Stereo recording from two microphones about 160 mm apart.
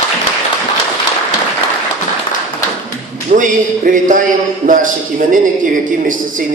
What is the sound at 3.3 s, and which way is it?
A man's voice, 55° right (ahead or behind).